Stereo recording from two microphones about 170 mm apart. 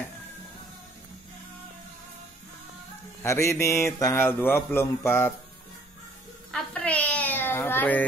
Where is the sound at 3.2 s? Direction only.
15° left (ahead or behind).